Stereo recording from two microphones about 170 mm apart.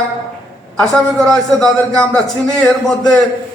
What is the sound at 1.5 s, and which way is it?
A man's voice, 5° left (ahead or behind).